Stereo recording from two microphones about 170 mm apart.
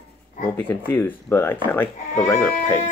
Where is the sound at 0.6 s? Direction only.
10° left (ahead or behind).